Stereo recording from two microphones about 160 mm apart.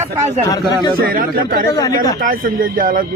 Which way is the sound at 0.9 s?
65° right (ahead or behind).